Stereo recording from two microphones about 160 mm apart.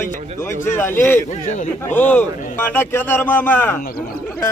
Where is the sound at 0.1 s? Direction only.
50° right (ahead or behind).